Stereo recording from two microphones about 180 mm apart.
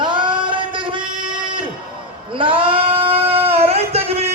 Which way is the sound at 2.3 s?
30° right (ahead or behind).